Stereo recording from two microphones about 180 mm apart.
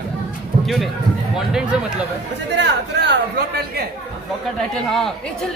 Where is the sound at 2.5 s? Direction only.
70° right (ahead or behind).